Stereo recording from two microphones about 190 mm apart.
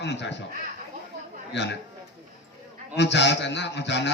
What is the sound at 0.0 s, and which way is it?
Speech, 65° left (ahead or behind).